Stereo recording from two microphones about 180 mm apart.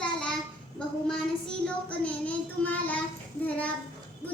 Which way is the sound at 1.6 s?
5° left (ahead or behind).